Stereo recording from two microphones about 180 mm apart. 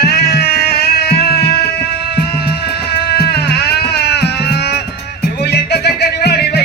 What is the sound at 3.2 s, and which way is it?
Music, 60° left (ahead or behind).